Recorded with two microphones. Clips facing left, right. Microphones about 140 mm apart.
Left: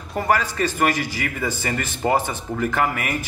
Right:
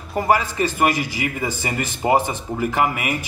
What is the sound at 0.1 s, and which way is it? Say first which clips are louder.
A man's voice: right 2 dB; 10° right (ahead or behind).